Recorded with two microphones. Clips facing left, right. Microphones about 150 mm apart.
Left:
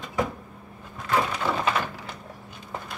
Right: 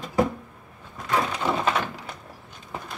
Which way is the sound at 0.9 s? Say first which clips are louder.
Even; centre (ahead or behind).